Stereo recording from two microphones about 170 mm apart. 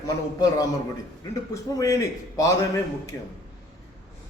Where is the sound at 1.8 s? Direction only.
20° left (ahead or behind).